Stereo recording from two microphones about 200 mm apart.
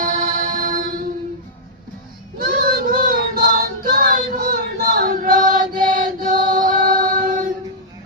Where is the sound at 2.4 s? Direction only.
45° right (ahead or behind).